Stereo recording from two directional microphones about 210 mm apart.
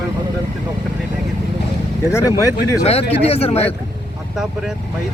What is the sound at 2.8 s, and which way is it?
Speech, 30° left (ahead or behind).